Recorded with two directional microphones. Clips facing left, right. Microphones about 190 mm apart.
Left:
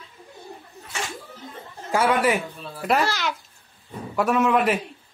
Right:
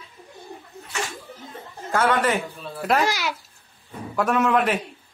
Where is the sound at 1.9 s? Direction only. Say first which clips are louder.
Left 1 dB; 10° left (ahead or behind).